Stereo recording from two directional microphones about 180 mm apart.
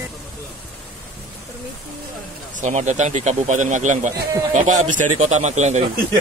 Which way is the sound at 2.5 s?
40° right (ahead or behind).